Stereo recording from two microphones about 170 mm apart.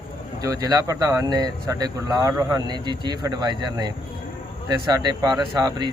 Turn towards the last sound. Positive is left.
turn(degrees=-25)  # may be behind; listen again after turning